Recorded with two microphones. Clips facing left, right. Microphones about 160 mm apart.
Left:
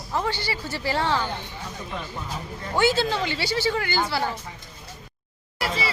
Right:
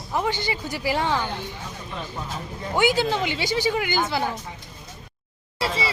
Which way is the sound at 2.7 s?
15° right (ahead or behind).